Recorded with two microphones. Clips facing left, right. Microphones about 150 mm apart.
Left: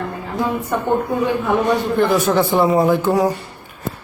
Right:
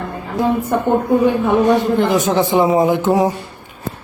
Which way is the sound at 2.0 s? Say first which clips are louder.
Even; 15° right (ahead or behind).